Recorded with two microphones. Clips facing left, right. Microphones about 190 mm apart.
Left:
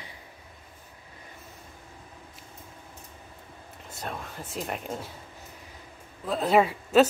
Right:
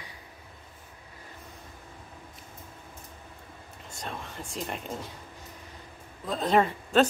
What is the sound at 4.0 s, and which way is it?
Speech, 5° left (ahead or behind).